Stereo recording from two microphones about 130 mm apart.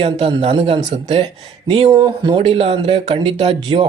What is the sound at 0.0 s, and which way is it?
Speech, 45° right (ahead or behind).